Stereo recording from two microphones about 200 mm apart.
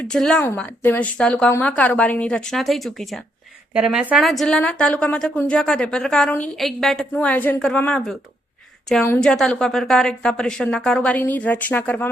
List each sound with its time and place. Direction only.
0.0 s a woman's voice: 5° left (ahead or behind)